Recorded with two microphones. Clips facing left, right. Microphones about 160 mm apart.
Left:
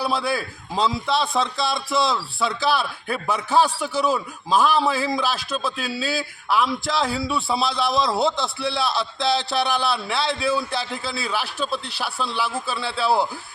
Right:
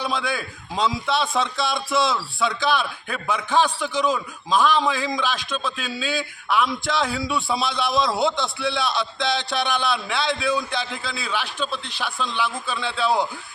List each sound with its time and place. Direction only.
0.0 s a man's voice: 5° left (ahead or behind)
5.7 s speech: 35° left (ahead or behind)
6.1 s a man's voice: 5° left (ahead or behind)